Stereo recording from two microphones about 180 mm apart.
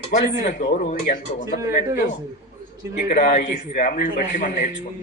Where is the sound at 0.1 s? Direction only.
45° left (ahead or behind).